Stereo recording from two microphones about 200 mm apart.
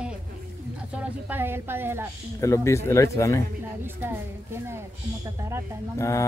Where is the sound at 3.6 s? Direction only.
10° right (ahead or behind).